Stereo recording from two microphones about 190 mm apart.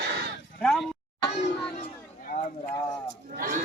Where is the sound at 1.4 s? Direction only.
45° left (ahead or behind).